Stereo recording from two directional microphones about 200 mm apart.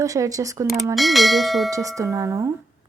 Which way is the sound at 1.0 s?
Centre (ahead or behind).